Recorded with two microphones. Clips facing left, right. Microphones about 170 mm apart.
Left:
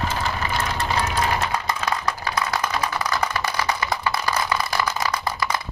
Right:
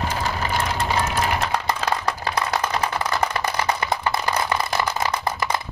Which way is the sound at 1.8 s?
30° right (ahead or behind).